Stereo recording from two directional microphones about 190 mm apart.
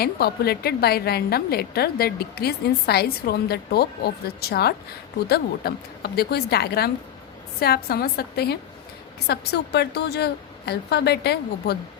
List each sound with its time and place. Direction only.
0.0 s a woman's voice: 55° left (ahead or behind)